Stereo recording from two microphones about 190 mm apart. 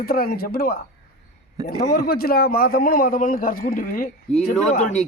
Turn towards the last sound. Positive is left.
turn(degrees=40)  # may be behind; listen again after turning